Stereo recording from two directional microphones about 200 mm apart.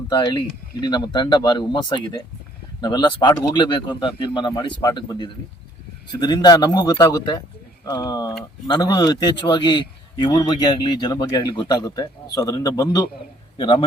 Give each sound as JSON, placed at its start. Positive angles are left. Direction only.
{"t": 0.1, "sound": "a man's voice", "side_deg": 20}